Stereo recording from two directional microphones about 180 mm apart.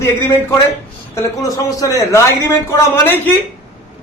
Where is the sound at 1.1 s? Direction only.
20° left (ahead or behind).